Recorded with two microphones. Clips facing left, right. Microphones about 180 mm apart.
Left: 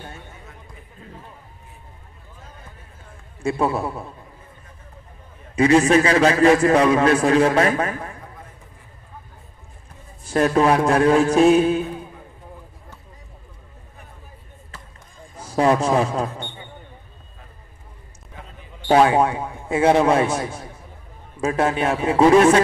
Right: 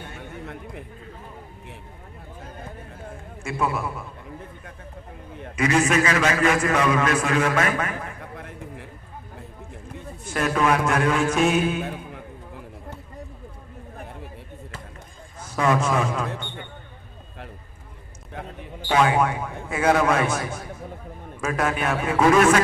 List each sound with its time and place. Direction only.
3.4 s a man's voice: 35° left (ahead or behind)
5.6 s a man's voice: 30° left (ahead or behind)
8.4 s a sound: 75° right (ahead or behind)
10.2 s a man's voice: 35° left (ahead or behind)
15.3 s a man's voice: 35° left (ahead or behind)
18.3 s a sound: 65° right (ahead or behind)
18.9 s a man's voice: 35° left (ahead or behind)